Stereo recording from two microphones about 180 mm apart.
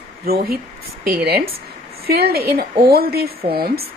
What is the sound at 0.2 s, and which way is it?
A woman's voice, 55° right (ahead or behind).